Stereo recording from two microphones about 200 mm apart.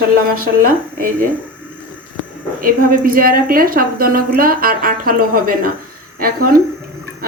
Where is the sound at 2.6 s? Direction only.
45° right (ahead or behind).